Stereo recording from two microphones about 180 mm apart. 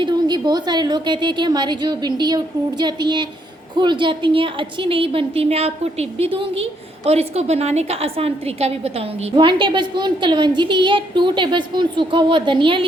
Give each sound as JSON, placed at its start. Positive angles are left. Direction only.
{"t": 0.0, "sound": "a woman's voice", "side_deg": -25}